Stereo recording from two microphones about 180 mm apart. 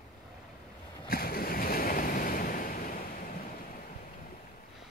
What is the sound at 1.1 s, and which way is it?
Waves, 55° left (ahead or behind).